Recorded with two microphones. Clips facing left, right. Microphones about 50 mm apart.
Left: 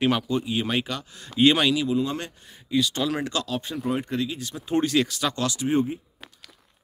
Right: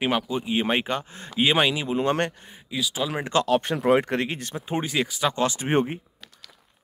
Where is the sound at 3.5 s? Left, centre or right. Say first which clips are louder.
Right 8 dB; right.